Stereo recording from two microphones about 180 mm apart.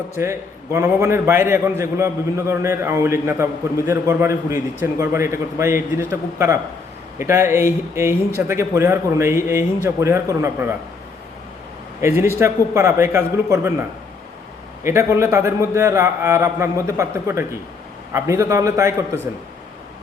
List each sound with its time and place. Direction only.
0.2 s speech: 15° right (ahead or behind)
12.0 s speech: 15° right (ahead or behind)
14.8 s speech: 15° right (ahead or behind)